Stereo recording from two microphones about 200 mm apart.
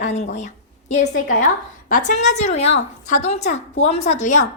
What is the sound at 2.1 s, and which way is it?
A woman's voice, 35° left (ahead or behind).